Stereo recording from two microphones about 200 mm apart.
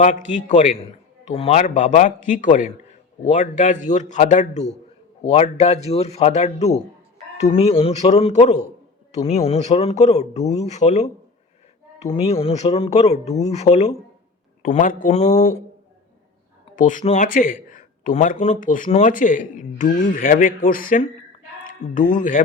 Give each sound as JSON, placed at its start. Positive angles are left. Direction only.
{"t": 0.0, "sound": "speech", "side_deg": 40}
{"t": 12.1, "sound": "speech", "side_deg": 30}
{"t": 16.7, "sound": "speech", "side_deg": 40}